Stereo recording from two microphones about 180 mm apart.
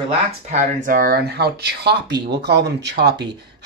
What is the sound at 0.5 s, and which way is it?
Speech, 50° right (ahead or behind).